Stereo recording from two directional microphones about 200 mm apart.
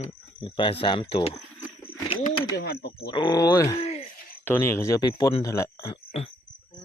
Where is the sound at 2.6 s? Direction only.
55° left (ahead or behind).